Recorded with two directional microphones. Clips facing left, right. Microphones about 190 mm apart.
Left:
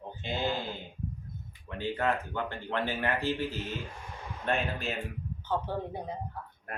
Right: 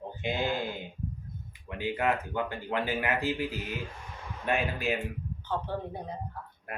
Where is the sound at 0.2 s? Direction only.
15° right (ahead or behind).